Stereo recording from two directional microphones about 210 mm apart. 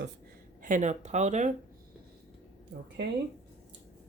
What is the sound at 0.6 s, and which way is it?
Speech, 40° right (ahead or behind).